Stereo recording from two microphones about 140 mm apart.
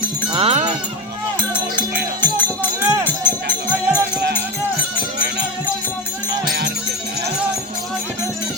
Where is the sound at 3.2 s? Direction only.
30° right (ahead or behind).